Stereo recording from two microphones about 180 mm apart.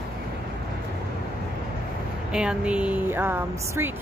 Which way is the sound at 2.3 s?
5° right (ahead or behind).